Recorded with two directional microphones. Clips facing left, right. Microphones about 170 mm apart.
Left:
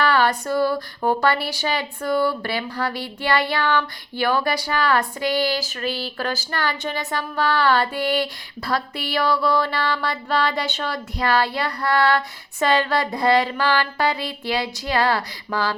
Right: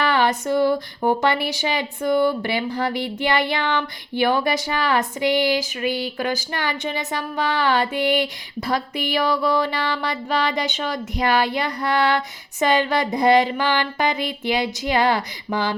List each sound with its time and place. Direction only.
0.0 s speech: 20° right (ahead or behind)